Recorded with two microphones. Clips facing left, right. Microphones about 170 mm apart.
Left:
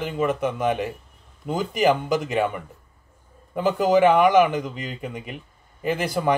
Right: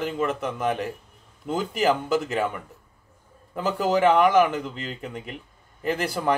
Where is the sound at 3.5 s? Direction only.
10° left (ahead or behind).